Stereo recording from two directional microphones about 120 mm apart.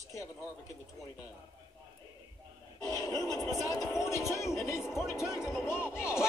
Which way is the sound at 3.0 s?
30° left (ahead or behind).